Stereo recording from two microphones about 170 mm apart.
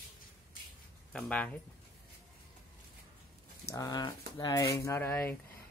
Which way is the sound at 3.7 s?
20° left (ahead or behind).